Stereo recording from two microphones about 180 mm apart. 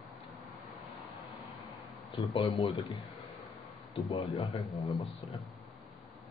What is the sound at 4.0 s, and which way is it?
Speech, 30° left (ahead or behind).